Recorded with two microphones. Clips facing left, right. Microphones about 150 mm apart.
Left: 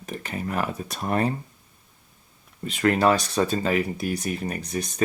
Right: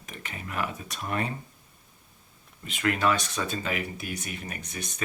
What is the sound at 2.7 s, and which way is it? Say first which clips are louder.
Speech: left 6 dB; 35° left (ahead or behind).